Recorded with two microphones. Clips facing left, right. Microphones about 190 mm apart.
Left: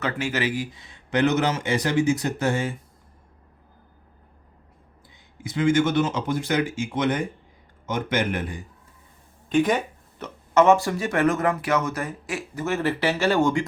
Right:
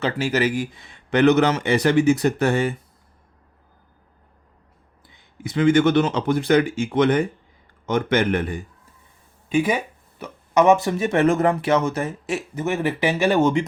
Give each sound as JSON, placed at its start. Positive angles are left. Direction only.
{"t": 0.0, "sound": "speech", "side_deg": -35}
{"t": 5.4, "sound": "speech", "side_deg": -65}
{"t": 9.5, "sound": "speech", "side_deg": -10}